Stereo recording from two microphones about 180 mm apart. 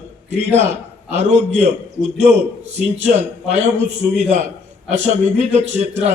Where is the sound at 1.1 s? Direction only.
40° right (ahead or behind).